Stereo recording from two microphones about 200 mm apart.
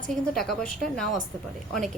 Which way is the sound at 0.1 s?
Centre (ahead or behind).